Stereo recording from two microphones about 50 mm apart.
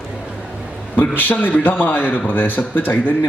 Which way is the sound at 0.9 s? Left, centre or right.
Left.